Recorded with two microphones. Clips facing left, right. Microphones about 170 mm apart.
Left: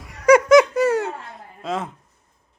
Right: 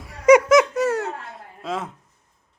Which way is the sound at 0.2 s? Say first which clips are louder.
Right 1 dB; 20° right (ahead or behind).